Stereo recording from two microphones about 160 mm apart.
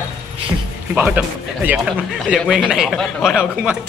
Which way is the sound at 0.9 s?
10° right (ahead or behind).